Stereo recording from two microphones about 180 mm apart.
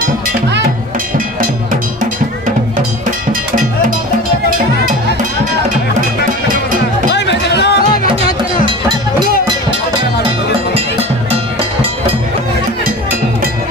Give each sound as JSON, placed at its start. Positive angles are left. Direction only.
{"t": 1.1, "sound": "music", "side_deg": -50}
{"t": 7.1, "sound": "music", "side_deg": 70}